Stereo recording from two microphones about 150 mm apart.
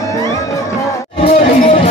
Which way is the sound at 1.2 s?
40° left (ahead or behind).